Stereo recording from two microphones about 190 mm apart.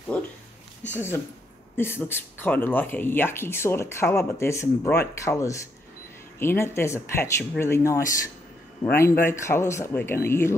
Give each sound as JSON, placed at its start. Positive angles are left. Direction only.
{"t": 0.9, "sound": "speech", "side_deg": 10}